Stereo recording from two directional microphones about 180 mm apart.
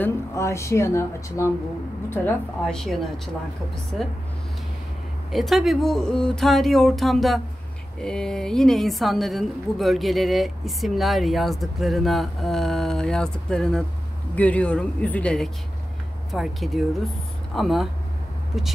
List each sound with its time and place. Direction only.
0.0 s a woman's voice: 15° left (ahead or behind); by 4.1 s centre (ahead or behind)
5.3 s a woman's voice: centre (ahead or behind)